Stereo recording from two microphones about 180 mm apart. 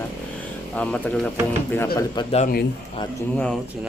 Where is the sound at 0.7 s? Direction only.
5° left (ahead or behind).